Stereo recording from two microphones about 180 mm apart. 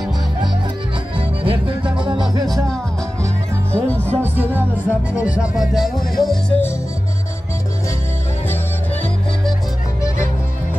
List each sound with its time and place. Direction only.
1.1 s music: 30° right (ahead or behind)
3.7 s music: 5° left (ahead or behind)
5.2 s music: 5° right (ahead or behind)